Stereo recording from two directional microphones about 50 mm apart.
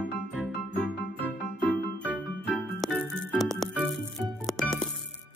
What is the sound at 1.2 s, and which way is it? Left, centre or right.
Music, left.